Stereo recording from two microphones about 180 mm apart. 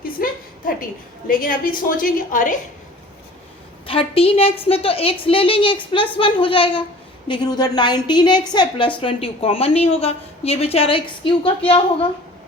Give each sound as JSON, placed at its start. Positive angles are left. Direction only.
{"t": 0.0, "sound": "a sound", "side_deg": 50}
{"t": 1.3, "sound": "a woman's voice", "side_deg": 50}
{"t": 3.8, "sound": "a woman's voice", "side_deg": 30}